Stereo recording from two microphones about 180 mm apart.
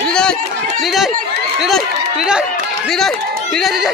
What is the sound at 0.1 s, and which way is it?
Chatter, 5° left (ahead or behind).